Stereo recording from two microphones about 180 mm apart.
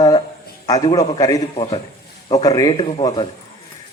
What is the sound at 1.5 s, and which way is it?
Speech, 30° left (ahead or behind).